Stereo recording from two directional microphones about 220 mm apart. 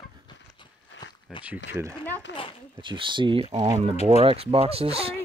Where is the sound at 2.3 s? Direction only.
55° left (ahead or behind).